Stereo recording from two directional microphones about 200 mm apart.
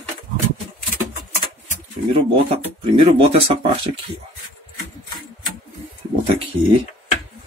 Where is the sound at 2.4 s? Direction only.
30° right (ahead or behind).